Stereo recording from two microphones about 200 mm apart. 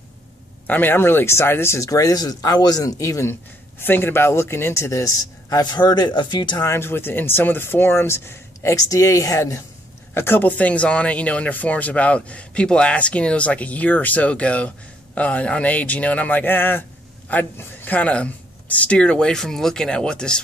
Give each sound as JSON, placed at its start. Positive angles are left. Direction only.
{"t": 0.7, "sound": "speech", "side_deg": 10}
{"t": 6.7, "sound": "speech", "side_deg": 10}